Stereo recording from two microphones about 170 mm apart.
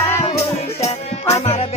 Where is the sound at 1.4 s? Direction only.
35° left (ahead or behind).